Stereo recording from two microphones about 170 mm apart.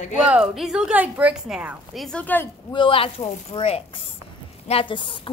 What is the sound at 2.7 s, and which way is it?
A woman's voice, 30° left (ahead or behind).